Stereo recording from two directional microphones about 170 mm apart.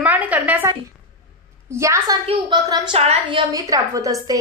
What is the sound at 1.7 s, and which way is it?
A woman's voice, 15° right (ahead or behind).